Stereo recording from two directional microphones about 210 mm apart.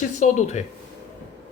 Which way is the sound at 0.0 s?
35° left (ahead or behind).